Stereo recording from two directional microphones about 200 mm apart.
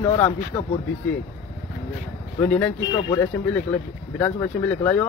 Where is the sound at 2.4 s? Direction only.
5° left (ahead or behind).